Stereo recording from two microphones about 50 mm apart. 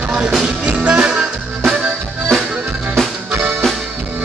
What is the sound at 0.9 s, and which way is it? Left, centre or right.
Music, centre.